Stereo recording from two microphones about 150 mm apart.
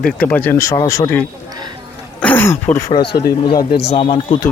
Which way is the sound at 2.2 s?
15° left (ahead or behind).